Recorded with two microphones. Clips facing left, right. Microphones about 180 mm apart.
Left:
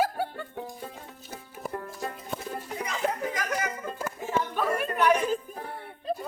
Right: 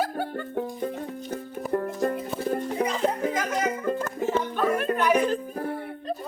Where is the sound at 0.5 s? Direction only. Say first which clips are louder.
Right 9 dB; 50° right (ahead or behind).